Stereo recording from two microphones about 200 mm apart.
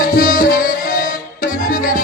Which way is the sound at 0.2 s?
45° left (ahead or behind).